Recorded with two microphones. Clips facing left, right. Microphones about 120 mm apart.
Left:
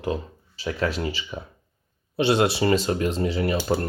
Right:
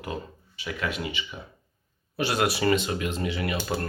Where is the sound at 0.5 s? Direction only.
35° left (ahead or behind).